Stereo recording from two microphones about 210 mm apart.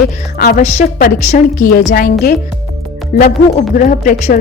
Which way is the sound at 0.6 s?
30° left (ahead or behind).